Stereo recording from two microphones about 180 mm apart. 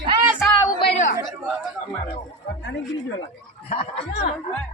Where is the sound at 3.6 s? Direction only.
35° left (ahead or behind).